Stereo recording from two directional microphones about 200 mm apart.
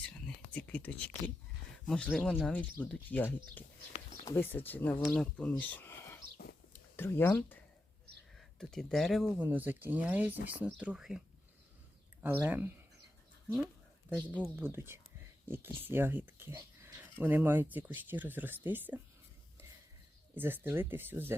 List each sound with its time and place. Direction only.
0.5 s speech: 5° left (ahead or behind)
6.3 s whispering: 55° left (ahead or behind)
6.9 s speech: 10° left (ahead or behind)
12.2 s speech: 10° right (ahead or behind)
14.1 s speech: 10° right (ahead or behind)
20.3 s speech: 10° right (ahead or behind)